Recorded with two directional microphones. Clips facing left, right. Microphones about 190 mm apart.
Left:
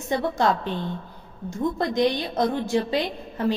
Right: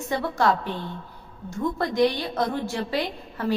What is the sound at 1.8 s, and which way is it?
A woman's voice, 20° left (ahead or behind).